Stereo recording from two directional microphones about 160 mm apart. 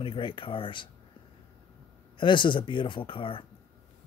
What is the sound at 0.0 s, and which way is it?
Speech, 30° left (ahead or behind).